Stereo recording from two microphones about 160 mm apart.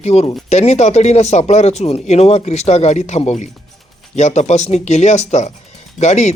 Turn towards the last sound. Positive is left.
turn(degrees=45)  # may be behind; listen again after turning